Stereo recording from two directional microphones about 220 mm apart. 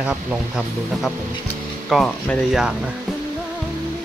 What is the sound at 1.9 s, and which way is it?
Speech, 5° left (ahead or behind).